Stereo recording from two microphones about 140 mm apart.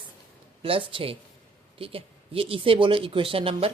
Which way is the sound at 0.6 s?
40° right (ahead or behind).